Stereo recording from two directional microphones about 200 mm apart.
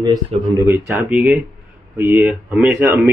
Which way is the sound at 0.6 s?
10° right (ahead or behind).